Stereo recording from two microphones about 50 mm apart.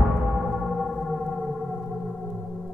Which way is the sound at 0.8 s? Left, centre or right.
Centre.